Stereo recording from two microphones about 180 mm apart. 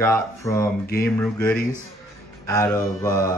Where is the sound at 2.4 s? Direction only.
15° left (ahead or behind).